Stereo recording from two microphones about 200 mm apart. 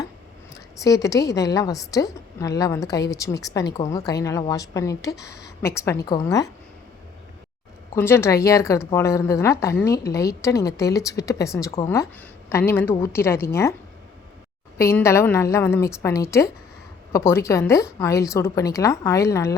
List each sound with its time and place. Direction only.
0.5 s a woman's voice: 15° left (ahead or behind)
7.9 s a woman's voice: 10° left (ahead or behind)
14.8 s a woman's voice: 15° left (ahead or behind)